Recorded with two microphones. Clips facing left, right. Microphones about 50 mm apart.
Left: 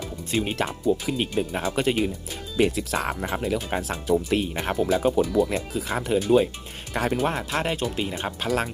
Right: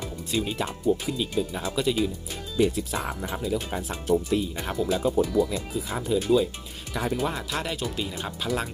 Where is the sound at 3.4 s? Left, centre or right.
Left.